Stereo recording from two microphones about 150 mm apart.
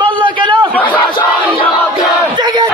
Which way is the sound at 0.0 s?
30° right (ahead or behind).